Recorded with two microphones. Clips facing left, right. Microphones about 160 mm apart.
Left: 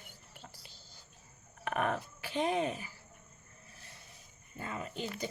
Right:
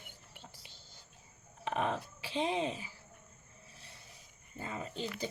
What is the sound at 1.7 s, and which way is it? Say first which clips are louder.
Speech: left 1 dB; 25° right (ahead or behind).